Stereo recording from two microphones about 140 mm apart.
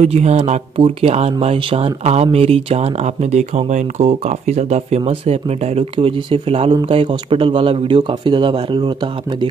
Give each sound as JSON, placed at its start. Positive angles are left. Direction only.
{"t": 0.0, "sound": "speech", "side_deg": -50}